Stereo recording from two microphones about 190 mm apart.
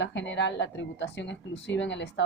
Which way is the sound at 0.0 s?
70° left (ahead or behind).